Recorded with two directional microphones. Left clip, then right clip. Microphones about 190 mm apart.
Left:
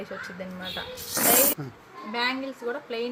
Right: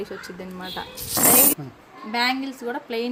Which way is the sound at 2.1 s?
75° right (ahead or behind).